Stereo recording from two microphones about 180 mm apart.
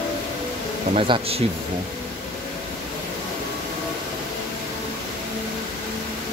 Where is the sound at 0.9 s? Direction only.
30° right (ahead or behind).